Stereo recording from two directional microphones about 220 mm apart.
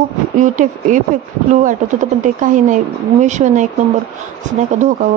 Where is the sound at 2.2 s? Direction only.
35° right (ahead or behind).